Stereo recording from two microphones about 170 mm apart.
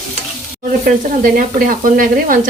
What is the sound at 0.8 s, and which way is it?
Sizzle, 55° right (ahead or behind).